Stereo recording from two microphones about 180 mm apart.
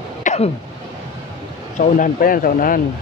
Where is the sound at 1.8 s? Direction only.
50° left (ahead or behind).